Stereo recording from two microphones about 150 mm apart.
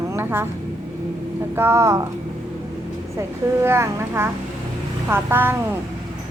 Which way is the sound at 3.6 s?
15° right (ahead or behind).